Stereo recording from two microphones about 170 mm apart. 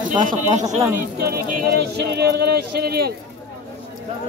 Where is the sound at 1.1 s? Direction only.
65° right (ahead or behind).